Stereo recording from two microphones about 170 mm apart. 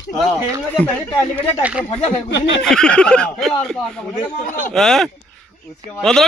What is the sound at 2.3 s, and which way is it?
Snicker, 90° left.